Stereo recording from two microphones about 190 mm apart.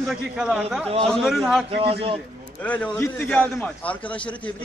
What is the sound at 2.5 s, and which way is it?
A man's voice, 5° left (ahead or behind).